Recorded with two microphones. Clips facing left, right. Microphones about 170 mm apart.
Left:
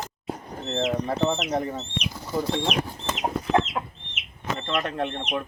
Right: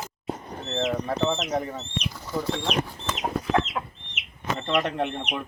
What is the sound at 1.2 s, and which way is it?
Speech, 10° left (ahead or behind).